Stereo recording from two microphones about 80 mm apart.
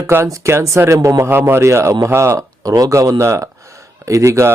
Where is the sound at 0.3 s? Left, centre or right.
Right.